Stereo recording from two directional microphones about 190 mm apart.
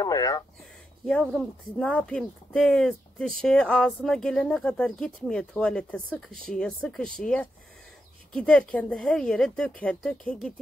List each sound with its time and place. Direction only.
0.0 s speech: 20° left (ahead or behind)
1.0 s speech: 5° left (ahead or behind)